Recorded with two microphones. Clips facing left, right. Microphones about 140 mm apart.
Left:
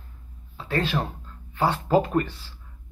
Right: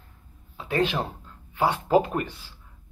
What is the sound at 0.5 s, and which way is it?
Speech, 15° right (ahead or behind).